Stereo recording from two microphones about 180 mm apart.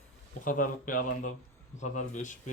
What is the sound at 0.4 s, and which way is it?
Speech, 50° left (ahead or behind).